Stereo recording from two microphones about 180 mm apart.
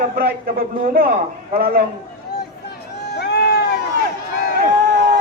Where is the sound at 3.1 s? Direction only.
65° left (ahead or behind).